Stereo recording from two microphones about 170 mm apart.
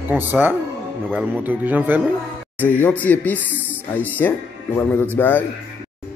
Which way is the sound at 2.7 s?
10° left (ahead or behind).